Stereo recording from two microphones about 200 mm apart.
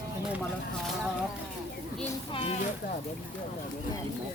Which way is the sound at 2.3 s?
30° left (ahead or behind).